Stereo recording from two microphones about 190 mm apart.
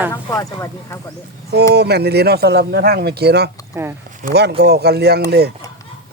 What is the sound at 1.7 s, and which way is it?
Speech, 60° right (ahead or behind).